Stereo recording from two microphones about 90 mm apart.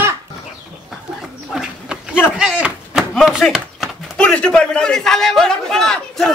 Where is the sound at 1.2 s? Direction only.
5° right (ahead or behind).